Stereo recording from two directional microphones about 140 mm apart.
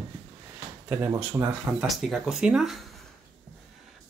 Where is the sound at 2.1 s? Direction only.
5° right (ahead or behind).